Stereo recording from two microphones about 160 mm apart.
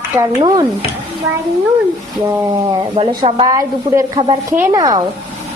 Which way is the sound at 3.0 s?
35° right (ahead or behind).